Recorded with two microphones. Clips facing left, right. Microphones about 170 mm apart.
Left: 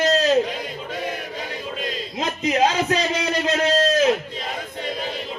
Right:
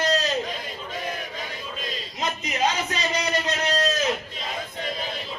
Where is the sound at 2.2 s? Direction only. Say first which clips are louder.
Left 6 dB; 90° left.